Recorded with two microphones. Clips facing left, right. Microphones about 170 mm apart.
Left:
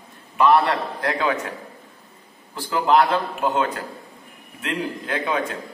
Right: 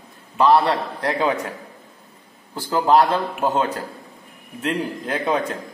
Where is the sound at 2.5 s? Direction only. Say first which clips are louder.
Right 2 dB; 35° right (ahead or behind).